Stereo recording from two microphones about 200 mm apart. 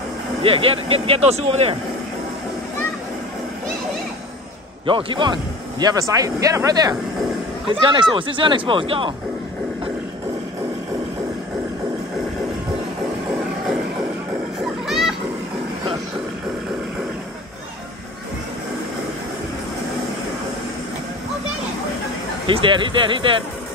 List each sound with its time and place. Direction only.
0.4 s speech: 30° right (ahead or behind)
4.8 s speech: 25° right (ahead or behind)
14.6 s children playing: centre (ahead or behind)
22.5 s speech: 25° right (ahead or behind)